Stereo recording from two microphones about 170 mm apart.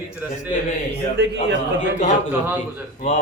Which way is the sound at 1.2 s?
85° right.